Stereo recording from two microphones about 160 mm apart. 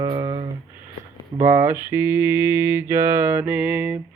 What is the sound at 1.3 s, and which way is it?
Mantra, 40° right (ahead or behind).